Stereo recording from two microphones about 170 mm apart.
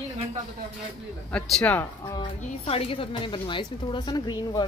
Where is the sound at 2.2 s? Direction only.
35° left (ahead or behind).